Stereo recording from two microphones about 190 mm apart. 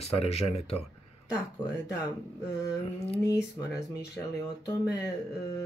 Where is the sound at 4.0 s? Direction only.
60° left (ahead or behind).